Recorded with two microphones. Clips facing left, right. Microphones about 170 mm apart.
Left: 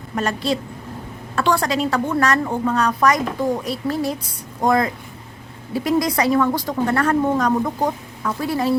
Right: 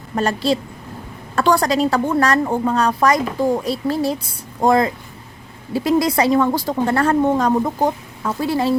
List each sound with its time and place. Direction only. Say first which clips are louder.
0.2 s a woman's voice: right 3 dB; 35° right (ahead or behind)